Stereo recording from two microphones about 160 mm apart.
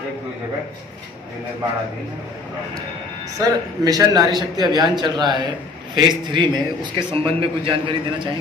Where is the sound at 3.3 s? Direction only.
25° right (ahead or behind).